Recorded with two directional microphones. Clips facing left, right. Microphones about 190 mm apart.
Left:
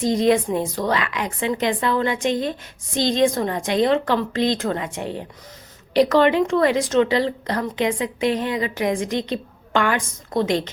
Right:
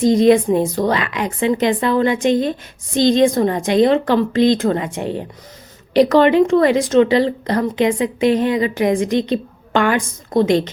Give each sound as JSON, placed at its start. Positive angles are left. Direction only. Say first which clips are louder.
{"t": 0.0, "sound": "a woman's voice", "louder": "right 6 dB", "side_deg": -20}